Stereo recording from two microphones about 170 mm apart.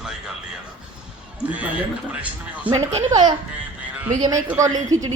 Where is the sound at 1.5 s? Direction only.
10° right (ahead or behind).